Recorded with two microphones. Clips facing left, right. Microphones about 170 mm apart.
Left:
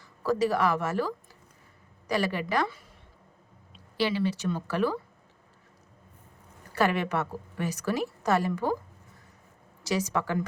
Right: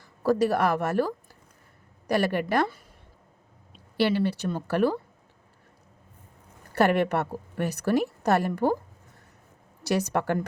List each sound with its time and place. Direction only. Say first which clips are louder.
0.3 s a woman's voice: right 3 dB; 60° right (ahead or behind)
3.9 s a woman's voice: right 3 dB; 60° right (ahead or behind)
6.7 s a woman's voice: right 4 dB; 60° right (ahead or behind)
9.8 s a woman's voice: right 3 dB; 60° right (ahead or behind)